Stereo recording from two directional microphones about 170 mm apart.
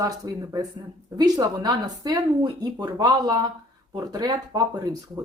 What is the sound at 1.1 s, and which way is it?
Speech, 20° right (ahead or behind).